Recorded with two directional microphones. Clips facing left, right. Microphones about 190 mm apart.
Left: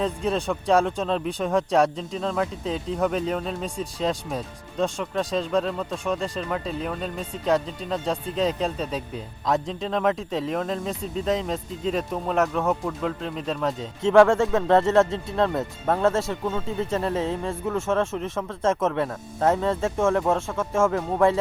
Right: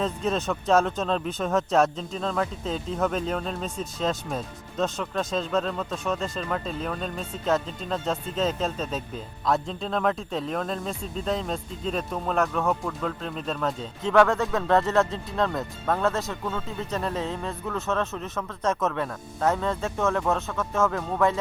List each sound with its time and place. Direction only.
0.0 s a man's voice: 10° left (ahead or behind); by 21.3 s 30° left (ahead or behind)